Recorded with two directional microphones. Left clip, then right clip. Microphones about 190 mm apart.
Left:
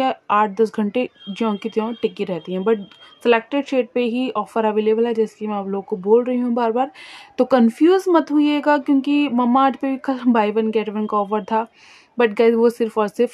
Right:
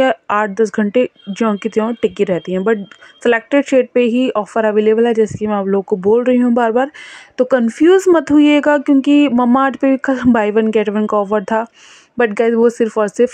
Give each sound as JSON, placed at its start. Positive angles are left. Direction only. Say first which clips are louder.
{"t": 0.0, "sound": "speech", "louder": "right 4 dB", "side_deg": -25}
{"t": 7.9, "sound": "speech", "louder": "right 6 dB", "side_deg": -35}